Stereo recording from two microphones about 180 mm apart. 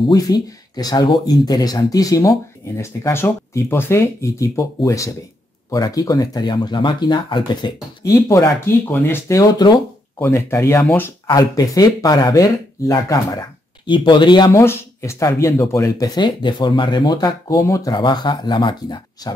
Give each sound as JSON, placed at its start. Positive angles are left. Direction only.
{"t": 0.1, "sound": "speech", "side_deg": 20}